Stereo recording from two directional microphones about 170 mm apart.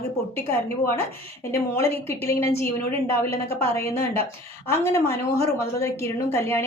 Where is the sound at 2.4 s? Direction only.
15° left (ahead or behind).